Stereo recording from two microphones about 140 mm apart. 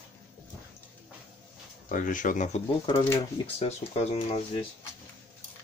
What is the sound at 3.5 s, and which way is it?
Speech, 50° left (ahead or behind).